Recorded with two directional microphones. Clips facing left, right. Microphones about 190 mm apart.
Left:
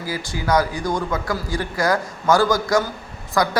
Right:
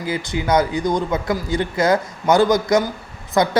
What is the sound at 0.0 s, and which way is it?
Speech, 20° right (ahead or behind).